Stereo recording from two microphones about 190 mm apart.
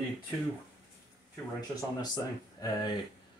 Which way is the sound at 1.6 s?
20° left (ahead or behind).